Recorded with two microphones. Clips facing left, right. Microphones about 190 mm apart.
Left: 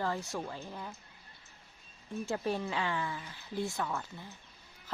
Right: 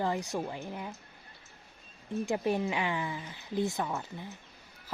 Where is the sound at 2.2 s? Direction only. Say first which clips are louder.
Right 4 dB; 15° right (ahead or behind).